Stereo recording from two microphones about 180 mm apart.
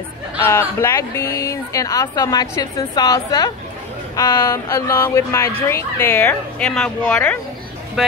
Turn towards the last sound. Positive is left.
turn(degrees=10)  # may be behind; listen again after turning